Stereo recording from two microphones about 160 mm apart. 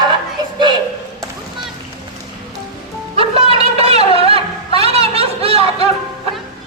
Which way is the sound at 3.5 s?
40° right (ahead or behind).